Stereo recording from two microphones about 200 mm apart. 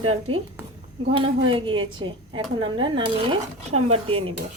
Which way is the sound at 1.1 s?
25° right (ahead or behind).